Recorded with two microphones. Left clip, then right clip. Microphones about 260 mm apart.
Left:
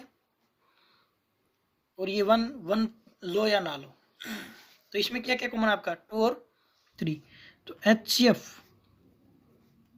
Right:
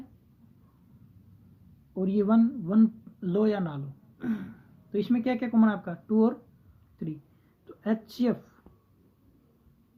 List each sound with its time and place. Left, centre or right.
2.0 s speech: left
7.6 s speech: left